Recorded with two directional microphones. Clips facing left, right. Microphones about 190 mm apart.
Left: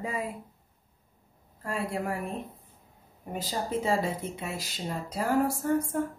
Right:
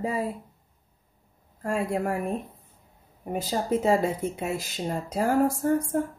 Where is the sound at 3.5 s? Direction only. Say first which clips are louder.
Right 5 dB; 50° right (ahead or behind).